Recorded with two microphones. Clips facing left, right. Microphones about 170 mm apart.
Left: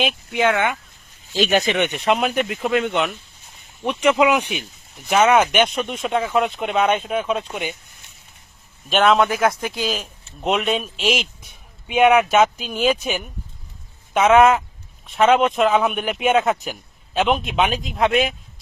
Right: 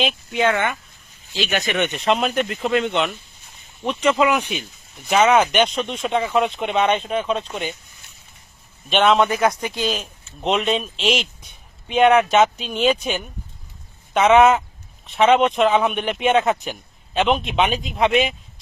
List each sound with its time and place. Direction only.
0.0 s speech: 10° left (ahead or behind)
1.3 s speech: 40° left (ahead or behind)
1.7 s speech: 15° left (ahead or behind)
8.9 s a man's voice: centre (ahead or behind)